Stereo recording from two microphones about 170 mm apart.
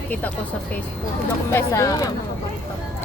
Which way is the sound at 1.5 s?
20° left (ahead or behind).